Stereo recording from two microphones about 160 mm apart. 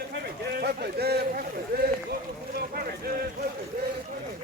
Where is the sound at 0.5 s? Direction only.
80° right.